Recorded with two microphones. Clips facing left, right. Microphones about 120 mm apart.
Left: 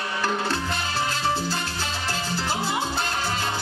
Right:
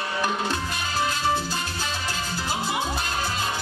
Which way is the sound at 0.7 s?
25° left (ahead or behind).